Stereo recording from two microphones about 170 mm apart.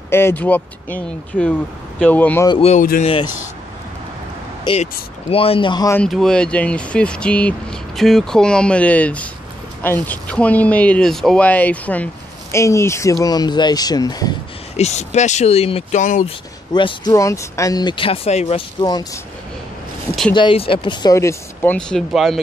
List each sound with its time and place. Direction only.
0.1 s speech: 15° left (ahead or behind)
2.6 s speech: 45° left (ahead or behind)
5.3 s speech: 35° left (ahead or behind)
5.9 s speech: 5° left (ahead or behind); by 14.3 s 25° left (ahead or behind)
14.8 s speech: 40° left (ahead or behind)
16.3 s speech: 30° left (ahead or behind)
18.8 s speech: 25° left (ahead or behind)
20.3 s speech: 30° left (ahead or behind)
21.7 s speech: 5° left (ahead or behind)